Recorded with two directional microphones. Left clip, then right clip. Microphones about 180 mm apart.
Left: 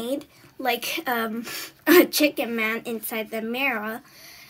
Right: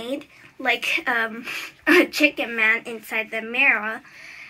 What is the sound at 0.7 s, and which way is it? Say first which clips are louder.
A woman's voice: right 4 dB; 65° left (ahead or behind).